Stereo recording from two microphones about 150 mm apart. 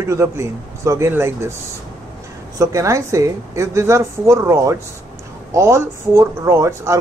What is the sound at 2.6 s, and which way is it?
A woman's voice, 20° right (ahead or behind).